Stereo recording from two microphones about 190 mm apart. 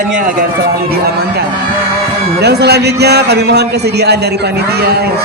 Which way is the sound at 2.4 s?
60° right (ahead or behind).